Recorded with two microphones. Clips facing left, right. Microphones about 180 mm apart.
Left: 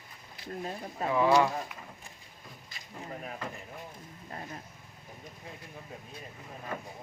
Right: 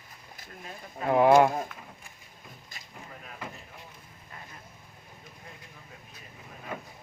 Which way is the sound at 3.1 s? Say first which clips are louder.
Left 8 dB; 35° left (ahead or behind).